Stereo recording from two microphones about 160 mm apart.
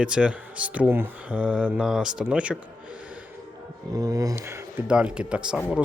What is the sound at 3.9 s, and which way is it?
Speech, 25° right (ahead or behind).